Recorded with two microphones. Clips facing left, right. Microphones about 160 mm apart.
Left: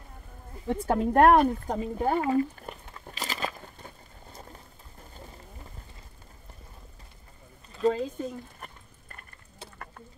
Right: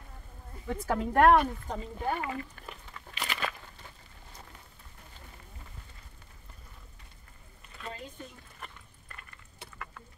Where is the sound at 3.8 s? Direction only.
50° left (ahead or behind).